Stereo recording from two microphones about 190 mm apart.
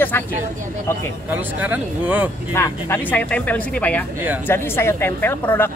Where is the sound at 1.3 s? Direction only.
10° right (ahead or behind).